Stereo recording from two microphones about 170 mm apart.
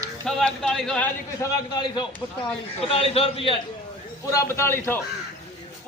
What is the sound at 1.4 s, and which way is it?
Speech, 15° left (ahead or behind).